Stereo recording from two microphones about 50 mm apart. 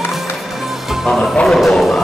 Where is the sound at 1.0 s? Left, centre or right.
Centre.